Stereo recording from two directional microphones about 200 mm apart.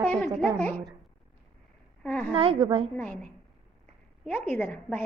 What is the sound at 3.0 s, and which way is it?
A woman's voice, 5° left (ahead or behind).